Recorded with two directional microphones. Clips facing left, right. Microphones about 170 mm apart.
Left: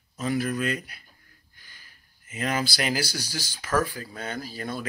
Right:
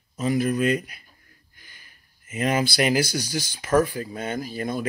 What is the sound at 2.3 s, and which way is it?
Speech, 20° right (ahead or behind).